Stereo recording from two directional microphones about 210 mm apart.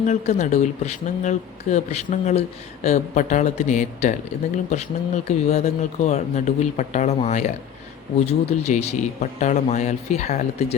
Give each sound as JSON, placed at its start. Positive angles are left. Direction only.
{"t": 0.0, "sound": "speech", "side_deg": 35}